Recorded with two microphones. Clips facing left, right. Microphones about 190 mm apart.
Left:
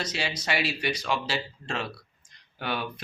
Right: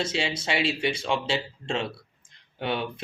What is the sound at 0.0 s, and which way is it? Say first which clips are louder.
Speech: right 4 dB; 25° right (ahead or behind).